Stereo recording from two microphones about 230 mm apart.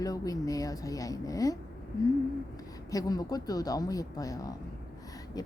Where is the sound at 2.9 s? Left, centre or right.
Centre.